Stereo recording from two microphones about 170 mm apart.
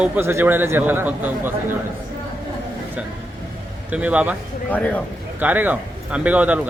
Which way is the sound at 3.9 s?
10° right (ahead or behind).